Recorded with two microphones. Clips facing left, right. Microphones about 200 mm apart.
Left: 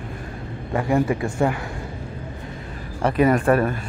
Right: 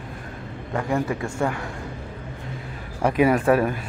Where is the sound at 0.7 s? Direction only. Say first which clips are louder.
Left 4 dB; 10° left (ahead or behind).